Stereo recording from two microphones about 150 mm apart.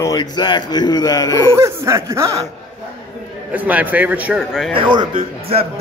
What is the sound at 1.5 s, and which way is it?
Speech, 20° right (ahead or behind).